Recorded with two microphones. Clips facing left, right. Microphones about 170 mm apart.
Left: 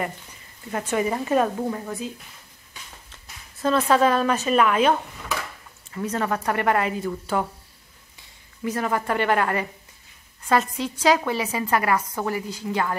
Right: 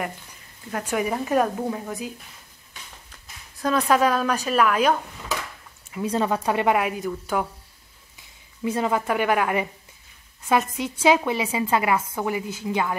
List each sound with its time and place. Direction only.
0.8 s a woman's voice: 5° right (ahead or behind)
3.6 s a woman's voice: centre (ahead or behind)
8.7 s speech: 20° right (ahead or behind)
9.0 s speech: 10° right (ahead or behind)